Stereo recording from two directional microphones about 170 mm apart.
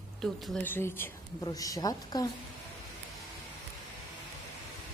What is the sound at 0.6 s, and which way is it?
A woman's voice, 15° left (ahead or behind).